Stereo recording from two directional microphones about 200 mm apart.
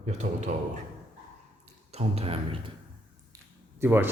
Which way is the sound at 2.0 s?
30° right (ahead or behind).